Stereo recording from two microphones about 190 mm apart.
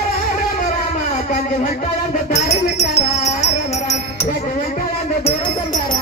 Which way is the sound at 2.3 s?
35° left (ahead or behind).